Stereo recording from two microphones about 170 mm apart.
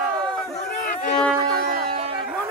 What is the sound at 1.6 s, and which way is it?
Music, 65° right (ahead or behind).